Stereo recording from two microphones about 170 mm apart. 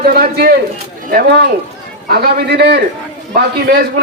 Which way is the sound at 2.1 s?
70° right (ahead or behind).